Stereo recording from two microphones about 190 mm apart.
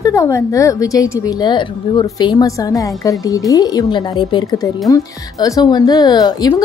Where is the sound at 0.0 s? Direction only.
15° left (ahead or behind).